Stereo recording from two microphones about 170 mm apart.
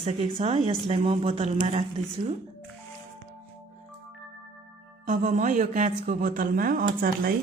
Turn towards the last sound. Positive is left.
turn(degrees=-60)  # may be behind; listen again after turning